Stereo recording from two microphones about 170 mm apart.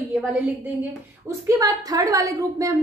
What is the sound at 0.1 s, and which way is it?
A woman's voice, 10° right (ahead or behind).